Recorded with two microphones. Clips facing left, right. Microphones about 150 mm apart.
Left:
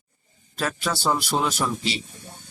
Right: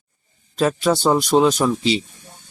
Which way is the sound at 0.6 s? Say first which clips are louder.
Right 8 dB; 25° right (ahead or behind).